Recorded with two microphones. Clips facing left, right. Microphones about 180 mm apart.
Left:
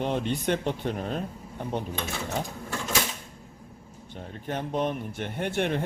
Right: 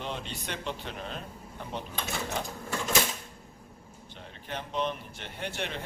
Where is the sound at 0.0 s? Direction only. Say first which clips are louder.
Left 10 dB; 55° left (ahead or behind).